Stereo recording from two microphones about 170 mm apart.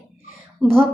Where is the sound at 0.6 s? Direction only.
Centre (ahead or behind).